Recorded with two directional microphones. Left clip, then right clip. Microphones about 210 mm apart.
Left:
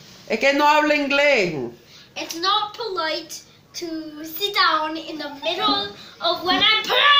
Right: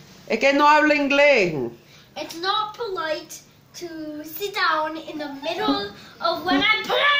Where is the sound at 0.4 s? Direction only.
5° left (ahead or behind).